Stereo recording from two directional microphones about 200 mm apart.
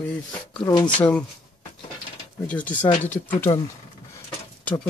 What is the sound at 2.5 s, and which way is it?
Speech, 5° left (ahead or behind).